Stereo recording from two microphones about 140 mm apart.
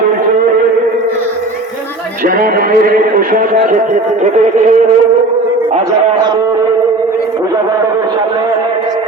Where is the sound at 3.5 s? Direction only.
60° right (ahead or behind).